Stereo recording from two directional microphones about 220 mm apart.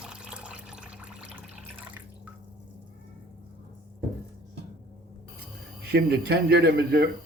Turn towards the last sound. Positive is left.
turn(degrees=-45)  # may be behind; listen again after turning